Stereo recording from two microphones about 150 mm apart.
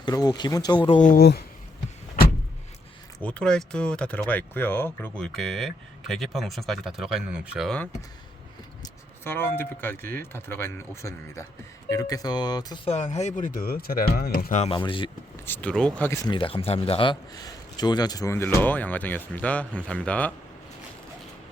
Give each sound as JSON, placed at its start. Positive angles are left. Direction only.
{"t": 0.0, "sound": "speech", "side_deg": 25}
{"t": 0.9, "sound": "speech", "side_deg": 65}
{"t": 3.2, "sound": "speech", "side_deg": 10}
{"t": 9.2, "sound": "a man's voice", "side_deg": 15}
{"t": 14.7, "sound": "speech", "side_deg": 35}
{"t": 15.4, "sound": "a man's voice", "side_deg": 10}
{"t": 16.0, "sound": "a man's voice", "side_deg": 20}
{"t": 16.3, "sound": "a man's voice", "side_deg": 35}